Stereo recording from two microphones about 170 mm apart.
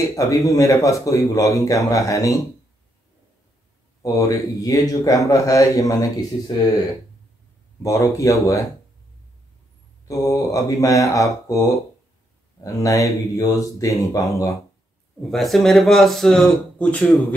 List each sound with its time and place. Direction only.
0.1 s speech: 20° left (ahead or behind)
4.0 s speech: 20° left (ahead or behind)
7.8 s speech: 20° left (ahead or behind)
10.0 s speech: 20° left (ahead or behind)
15.3 s speech: centre (ahead or behind)